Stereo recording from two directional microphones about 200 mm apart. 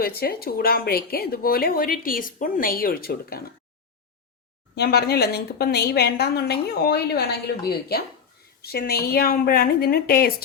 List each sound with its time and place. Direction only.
0.0 s a woman's voice: 50° left (ahead or behind)
4.7 s a woman's voice: 55° left (ahead or behind)